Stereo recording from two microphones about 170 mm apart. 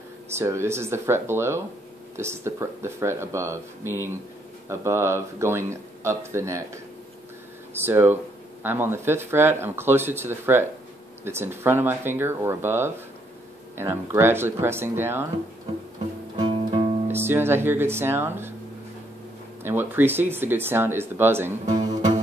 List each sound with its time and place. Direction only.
0.3 s speech: 15° right (ahead or behind)
7.8 s speech: 15° right (ahead or behind)
16.3 s guitar: 30° right (ahead or behind)
17.1 s speech: 15° right (ahead or behind)
19.6 s speech: 10° right (ahead or behind)
21.6 s music: 25° right (ahead or behind)